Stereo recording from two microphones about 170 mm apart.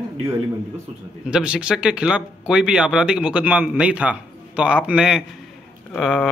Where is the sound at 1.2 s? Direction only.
5° right (ahead or behind).